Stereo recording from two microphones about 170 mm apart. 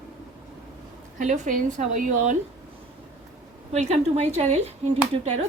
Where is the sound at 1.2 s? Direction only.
50° right (ahead or behind).